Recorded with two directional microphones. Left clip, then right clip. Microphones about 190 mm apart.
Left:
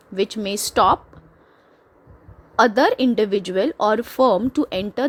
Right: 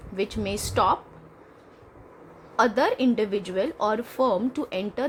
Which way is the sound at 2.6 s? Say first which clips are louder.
Left 6 dB; 40° left (ahead or behind).